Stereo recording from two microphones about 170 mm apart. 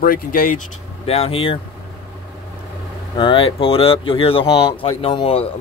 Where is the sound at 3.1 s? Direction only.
30° left (ahead or behind).